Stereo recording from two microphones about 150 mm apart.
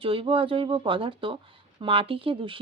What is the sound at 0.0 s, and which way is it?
Speech, 35° right (ahead or behind).